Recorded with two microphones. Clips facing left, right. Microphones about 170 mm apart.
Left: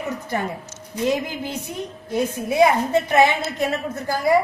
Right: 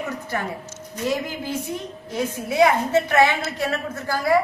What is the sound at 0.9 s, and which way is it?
A woman's voice, 20° left (ahead or behind).